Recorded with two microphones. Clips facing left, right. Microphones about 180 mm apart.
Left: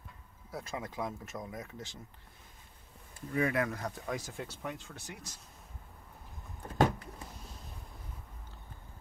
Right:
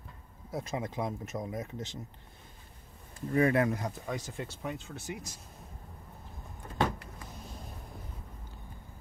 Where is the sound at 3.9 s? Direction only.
Centre (ahead or behind).